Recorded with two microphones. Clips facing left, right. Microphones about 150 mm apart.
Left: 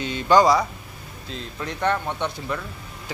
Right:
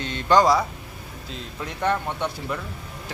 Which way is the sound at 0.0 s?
5° left (ahead or behind).